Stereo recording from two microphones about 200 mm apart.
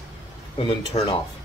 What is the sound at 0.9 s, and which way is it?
Speech, 30° left (ahead or behind).